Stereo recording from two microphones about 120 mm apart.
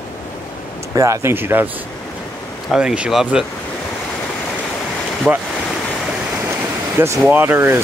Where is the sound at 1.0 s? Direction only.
25° right (ahead or behind).